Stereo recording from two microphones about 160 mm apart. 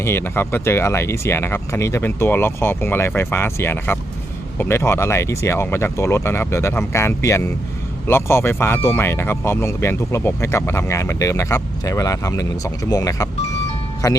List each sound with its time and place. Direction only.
0.0 s speech: 15° left (ahead or behind)